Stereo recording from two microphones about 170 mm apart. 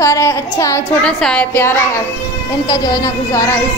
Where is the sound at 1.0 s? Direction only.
5° left (ahead or behind).